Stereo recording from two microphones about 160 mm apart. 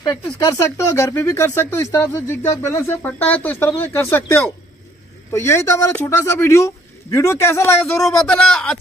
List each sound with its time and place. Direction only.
0.0 s speech: 25° left (ahead or behind)
7.9 s a man's voice: centre (ahead or behind)